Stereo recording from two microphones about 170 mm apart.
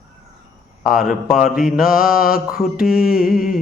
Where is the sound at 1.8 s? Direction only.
55° left (ahead or behind).